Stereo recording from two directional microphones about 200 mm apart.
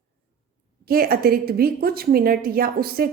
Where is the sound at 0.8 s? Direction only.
50° right (ahead or behind).